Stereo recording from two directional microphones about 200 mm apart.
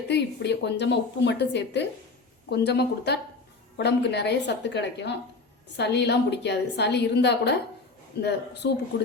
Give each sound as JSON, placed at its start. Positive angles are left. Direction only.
{"t": 0.1, "sound": "a woman's voice", "side_deg": 60}